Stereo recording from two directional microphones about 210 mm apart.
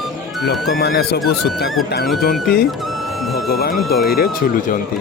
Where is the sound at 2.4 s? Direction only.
50° left (ahead or behind).